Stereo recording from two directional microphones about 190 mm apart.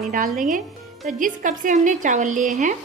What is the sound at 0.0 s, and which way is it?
A woman's voice, 45° right (ahead or behind).